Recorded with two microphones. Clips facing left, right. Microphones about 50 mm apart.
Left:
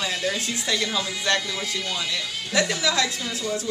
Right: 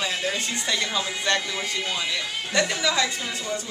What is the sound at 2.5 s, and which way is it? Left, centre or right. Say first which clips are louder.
A woman's voice: left 1 dB; centre.